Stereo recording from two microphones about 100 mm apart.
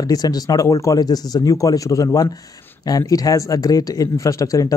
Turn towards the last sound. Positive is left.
turn(degrees=35)  # may be behind; listen again after turning